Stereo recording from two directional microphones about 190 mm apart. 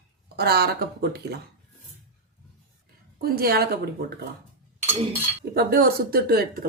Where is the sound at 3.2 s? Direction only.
55° right (ahead or behind).